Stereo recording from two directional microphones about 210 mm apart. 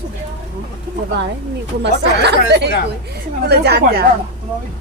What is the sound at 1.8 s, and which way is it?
Speech, 50° right (ahead or behind).